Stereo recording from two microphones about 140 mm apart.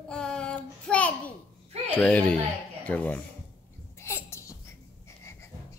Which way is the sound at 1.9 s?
10° left (ahead or behind).